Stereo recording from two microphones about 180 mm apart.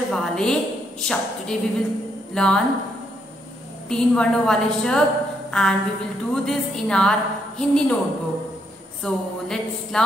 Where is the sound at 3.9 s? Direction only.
5° left (ahead or behind).